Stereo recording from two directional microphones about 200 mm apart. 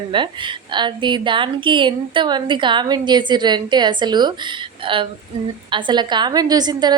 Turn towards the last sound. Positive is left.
turn(degrees=-20)  # may be behind; listen again after turning